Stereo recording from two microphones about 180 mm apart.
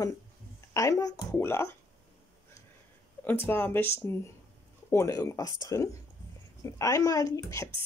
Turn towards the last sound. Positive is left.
turn(degrees=15)  # may be behind; listen again after turning